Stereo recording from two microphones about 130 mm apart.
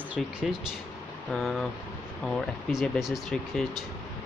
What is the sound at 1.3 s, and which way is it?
Speech, centre (ahead or behind).